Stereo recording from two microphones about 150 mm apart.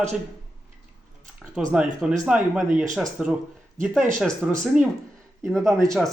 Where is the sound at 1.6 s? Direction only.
5° right (ahead or behind).